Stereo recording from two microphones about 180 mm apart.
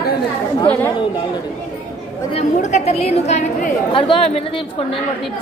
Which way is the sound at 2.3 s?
40° left (ahead or behind).